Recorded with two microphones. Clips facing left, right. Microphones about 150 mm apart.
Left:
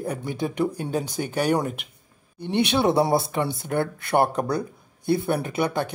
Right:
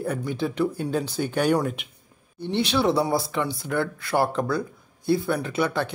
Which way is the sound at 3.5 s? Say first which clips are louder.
Left 1 dB; 50° left (ahead or behind).